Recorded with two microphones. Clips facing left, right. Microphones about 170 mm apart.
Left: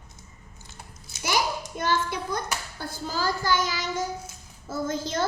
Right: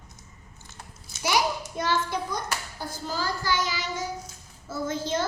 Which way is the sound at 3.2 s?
50° left (ahead or behind).